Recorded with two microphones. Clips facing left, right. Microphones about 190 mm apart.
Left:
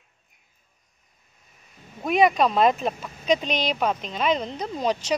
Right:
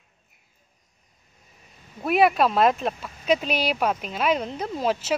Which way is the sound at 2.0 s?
5° right (ahead or behind).